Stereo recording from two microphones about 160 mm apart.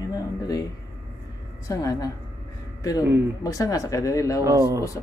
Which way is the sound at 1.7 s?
20° left (ahead or behind).